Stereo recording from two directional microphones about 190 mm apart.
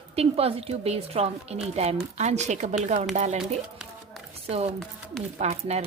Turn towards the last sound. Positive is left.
turn(degrees=-35)  # may be behind; listen again after turning